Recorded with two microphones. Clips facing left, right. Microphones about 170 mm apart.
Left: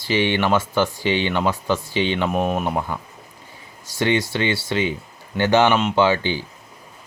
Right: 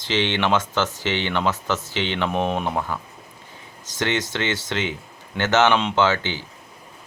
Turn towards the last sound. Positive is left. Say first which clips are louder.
# left 3 dB
turn(degrees=15)  # may be behind; listen again after turning